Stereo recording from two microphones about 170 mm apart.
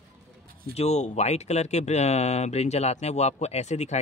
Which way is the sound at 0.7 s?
40° left (ahead or behind).